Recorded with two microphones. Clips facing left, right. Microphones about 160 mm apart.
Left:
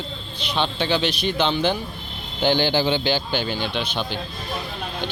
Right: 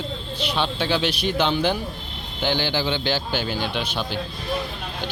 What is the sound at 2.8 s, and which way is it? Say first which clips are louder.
A man's voice: left 2 dB; 5° left (ahead or behind).